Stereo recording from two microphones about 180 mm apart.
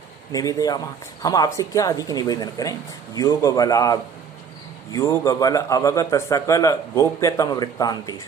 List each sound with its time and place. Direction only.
0.3 s a man's voice: 20° left (ahead or behind)